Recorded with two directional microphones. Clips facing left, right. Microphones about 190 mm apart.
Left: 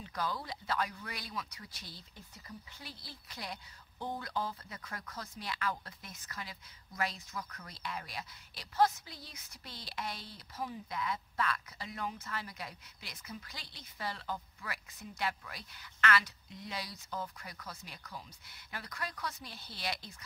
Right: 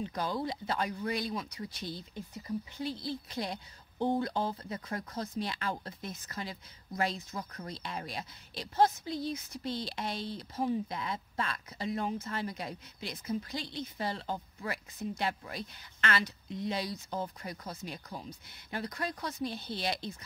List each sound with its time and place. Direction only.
0.0 s speech: 25° right (ahead or behind)